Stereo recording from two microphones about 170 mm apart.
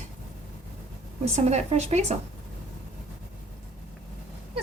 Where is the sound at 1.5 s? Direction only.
40° right (ahead or behind).